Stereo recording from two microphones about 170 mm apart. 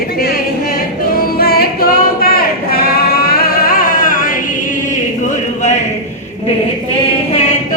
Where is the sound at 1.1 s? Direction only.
60° left (ahead or behind).